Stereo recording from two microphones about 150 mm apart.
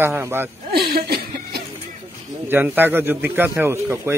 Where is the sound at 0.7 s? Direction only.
90° right.